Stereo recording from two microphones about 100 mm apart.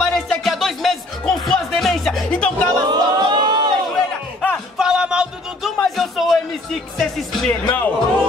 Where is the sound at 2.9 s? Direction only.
45° right (ahead or behind).